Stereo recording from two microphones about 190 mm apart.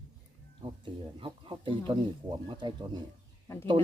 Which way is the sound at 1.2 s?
25° right (ahead or behind).